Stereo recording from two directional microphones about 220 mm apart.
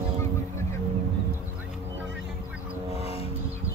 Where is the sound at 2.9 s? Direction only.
25° left (ahead or behind).